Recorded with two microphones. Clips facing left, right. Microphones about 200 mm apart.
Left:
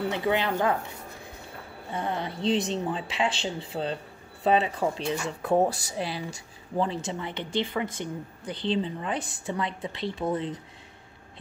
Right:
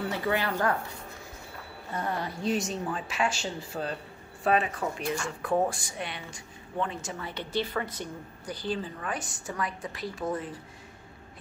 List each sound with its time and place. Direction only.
0.1 s speech: 20° left (ahead or behind)
2.0 s speech: 25° left (ahead or behind)
7.2 s speech: 20° left (ahead or behind)